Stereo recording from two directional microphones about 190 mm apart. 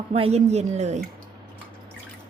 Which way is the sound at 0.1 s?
35° right (ahead or behind).